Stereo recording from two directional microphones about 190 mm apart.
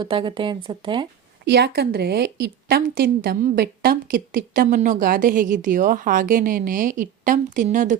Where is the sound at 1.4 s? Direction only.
60° right (ahead or behind).